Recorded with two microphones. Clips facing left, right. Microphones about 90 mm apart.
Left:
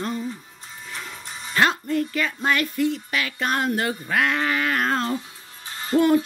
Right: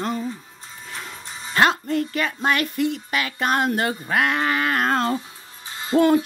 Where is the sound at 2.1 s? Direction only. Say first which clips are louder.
Right 1 dB; 50° right (ahead or behind).